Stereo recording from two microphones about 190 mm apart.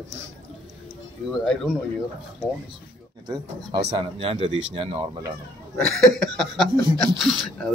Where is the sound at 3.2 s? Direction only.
20° right (ahead or behind).